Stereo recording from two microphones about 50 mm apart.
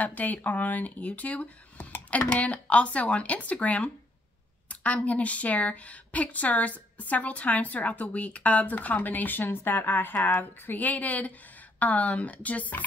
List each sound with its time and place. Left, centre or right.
0.0 s a woman's voice: left